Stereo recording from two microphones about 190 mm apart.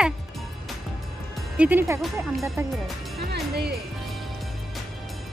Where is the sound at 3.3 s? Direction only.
55° right (ahead or behind).